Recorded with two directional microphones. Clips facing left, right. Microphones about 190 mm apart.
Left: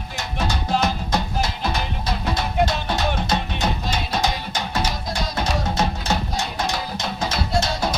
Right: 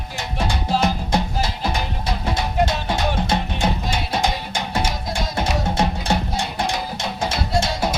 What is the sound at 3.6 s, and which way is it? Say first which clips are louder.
Music: right 2 dB; 10° right (ahead or behind).